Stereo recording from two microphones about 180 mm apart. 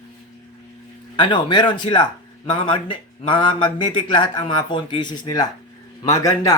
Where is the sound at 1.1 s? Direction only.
25° left (ahead or behind).